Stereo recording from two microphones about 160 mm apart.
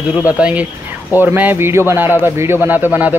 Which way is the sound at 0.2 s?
10° right (ahead or behind).